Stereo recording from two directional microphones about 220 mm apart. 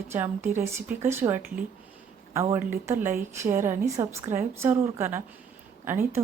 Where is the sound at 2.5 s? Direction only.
10° right (ahead or behind).